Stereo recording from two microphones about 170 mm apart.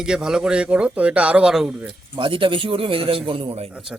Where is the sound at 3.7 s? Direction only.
5° right (ahead or behind).